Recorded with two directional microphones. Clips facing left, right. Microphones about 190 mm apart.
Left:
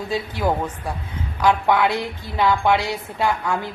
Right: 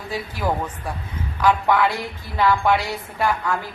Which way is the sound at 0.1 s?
25° left (ahead or behind).